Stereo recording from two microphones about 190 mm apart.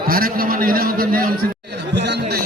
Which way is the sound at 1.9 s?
65° right (ahead or behind).